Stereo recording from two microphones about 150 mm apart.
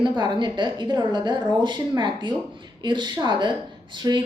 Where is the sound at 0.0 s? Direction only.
30° right (ahead or behind).